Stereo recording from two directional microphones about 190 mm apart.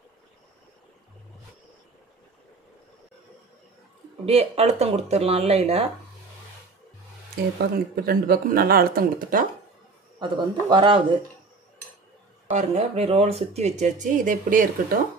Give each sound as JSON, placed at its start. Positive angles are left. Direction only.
{"t": 4.3, "sound": "speech", "side_deg": -30}
{"t": 7.7, "sound": "speech", "side_deg": -50}
{"t": 10.1, "sound": "a man's voice", "side_deg": -25}
{"t": 12.5, "sound": "speech", "side_deg": -35}